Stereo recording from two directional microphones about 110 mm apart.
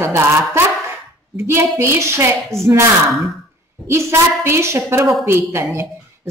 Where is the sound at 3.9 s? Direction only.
25° right (ahead or behind).